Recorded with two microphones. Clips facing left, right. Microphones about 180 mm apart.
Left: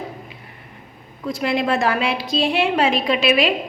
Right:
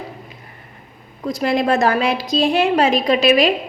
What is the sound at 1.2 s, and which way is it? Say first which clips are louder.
A woman's voice: right 3 dB; 40° right (ahead or behind).